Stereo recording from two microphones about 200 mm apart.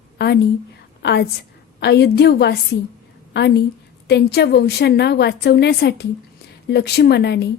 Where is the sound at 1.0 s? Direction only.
55° left (ahead or behind).